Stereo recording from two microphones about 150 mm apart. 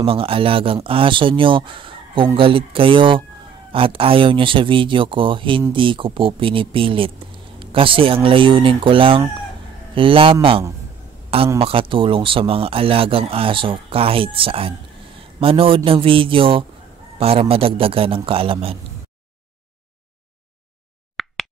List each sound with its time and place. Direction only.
0.0 s a man's voice: 35° right (ahead or behind)
21.2 s plop: centre (ahead or behind)